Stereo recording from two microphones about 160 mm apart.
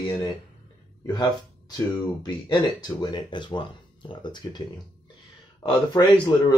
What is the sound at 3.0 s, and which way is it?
Speech, 25° left (ahead or behind).